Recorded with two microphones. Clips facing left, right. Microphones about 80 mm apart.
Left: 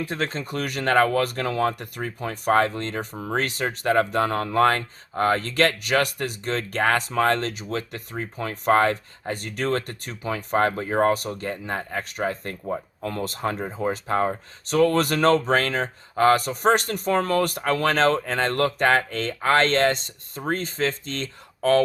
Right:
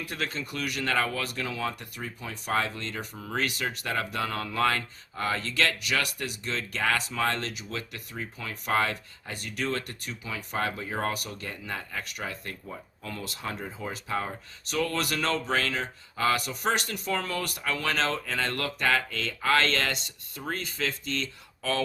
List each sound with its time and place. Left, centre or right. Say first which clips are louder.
0.0 s speech: left 6 dB; left